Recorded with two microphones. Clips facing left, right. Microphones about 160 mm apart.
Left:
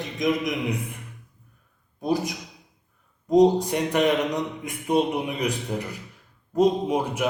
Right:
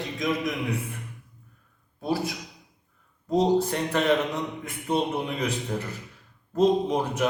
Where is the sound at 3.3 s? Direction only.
15° left (ahead or behind).